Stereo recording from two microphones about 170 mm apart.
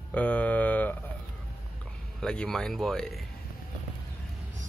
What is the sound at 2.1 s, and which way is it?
Speech, 5° left (ahead or behind).